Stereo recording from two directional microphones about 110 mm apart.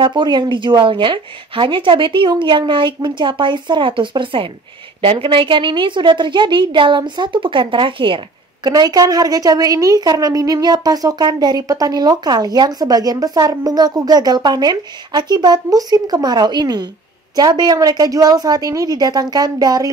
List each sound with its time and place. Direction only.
0.0 s speech: 45° right (ahead or behind)
8.6 s a woman's voice: 35° right (ahead or behind)